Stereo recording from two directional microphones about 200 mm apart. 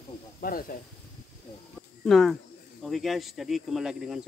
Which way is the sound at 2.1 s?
Centre (ahead or behind).